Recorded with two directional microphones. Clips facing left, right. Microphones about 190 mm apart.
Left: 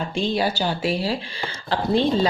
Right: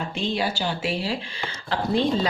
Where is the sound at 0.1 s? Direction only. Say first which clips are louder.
Left 4 dB; 40° left (ahead or behind).